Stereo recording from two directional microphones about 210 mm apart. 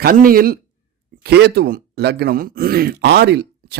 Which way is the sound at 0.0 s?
45° right (ahead or behind).